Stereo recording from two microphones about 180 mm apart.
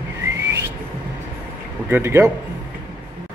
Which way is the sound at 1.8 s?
15° right (ahead or behind).